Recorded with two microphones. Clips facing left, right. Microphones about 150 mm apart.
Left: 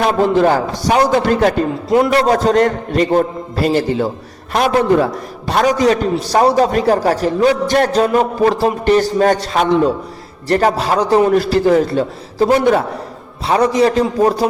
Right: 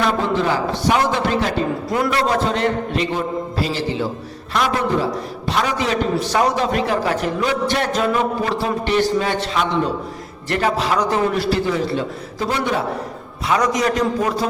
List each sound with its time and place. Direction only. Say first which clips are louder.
0.0 s a man's voice: left 6 dB; 50° left (ahead or behind)
13.5 s a man's voice: left 6 dB; 30° left (ahead or behind)